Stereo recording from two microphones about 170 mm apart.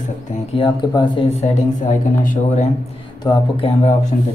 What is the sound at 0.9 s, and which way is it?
Speech, 25° left (ahead or behind).